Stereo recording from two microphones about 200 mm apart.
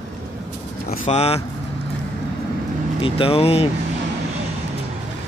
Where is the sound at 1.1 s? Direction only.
30° left (ahead or behind).